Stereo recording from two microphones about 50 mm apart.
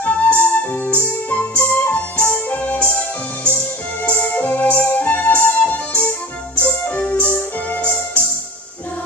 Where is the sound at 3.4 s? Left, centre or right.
Left.